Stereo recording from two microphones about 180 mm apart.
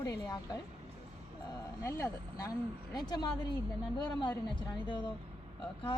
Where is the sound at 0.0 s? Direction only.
20° left (ahead or behind).